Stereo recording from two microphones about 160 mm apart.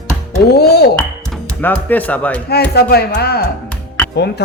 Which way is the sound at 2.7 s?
85° left.